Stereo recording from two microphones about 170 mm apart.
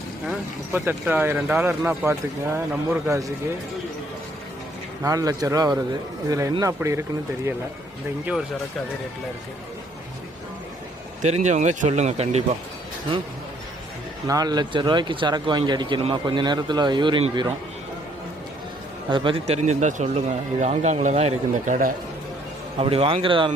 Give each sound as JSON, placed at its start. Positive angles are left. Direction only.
{"t": 0.7, "sound": "speech", "side_deg": -10}
{"t": 5.0, "sound": "speech", "side_deg": -20}
{"t": 11.2, "sound": "speech", "side_deg": -45}
{"t": 14.3, "sound": "speech", "side_deg": -20}
{"t": 19.1, "sound": "speech", "side_deg": -30}
{"t": 22.8, "sound": "a man's voice", "side_deg": -35}